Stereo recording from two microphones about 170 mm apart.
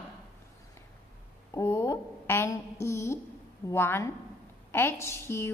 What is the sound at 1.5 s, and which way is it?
A woman's voice, 15° left (ahead or behind).